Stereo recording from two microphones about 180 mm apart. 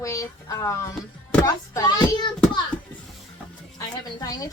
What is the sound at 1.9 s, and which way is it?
Speech, 25° left (ahead or behind).